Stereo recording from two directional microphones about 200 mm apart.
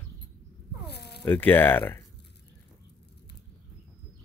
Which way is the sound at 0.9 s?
55° left (ahead or behind).